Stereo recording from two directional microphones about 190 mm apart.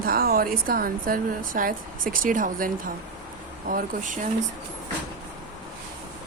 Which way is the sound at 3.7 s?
45° right (ahead or behind).